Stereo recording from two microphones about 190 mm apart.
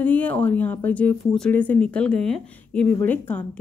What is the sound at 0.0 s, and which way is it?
Speech, 10° left (ahead or behind).